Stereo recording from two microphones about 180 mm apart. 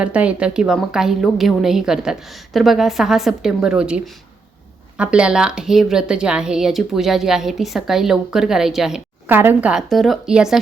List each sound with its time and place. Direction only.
0.0 s speech: 5° right (ahead or behind)